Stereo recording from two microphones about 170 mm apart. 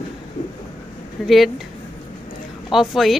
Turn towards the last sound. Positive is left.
turn(degrees=0)  # may be behind; listen again after turning